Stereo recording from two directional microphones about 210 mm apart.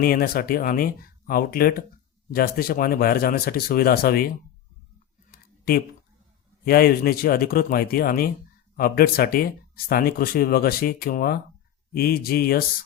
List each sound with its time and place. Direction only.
0.0 s speech: 45° left (ahead or behind)
5.3 s a sound: 45° left (ahead or behind)
6.7 s speech: 45° left (ahead or behind)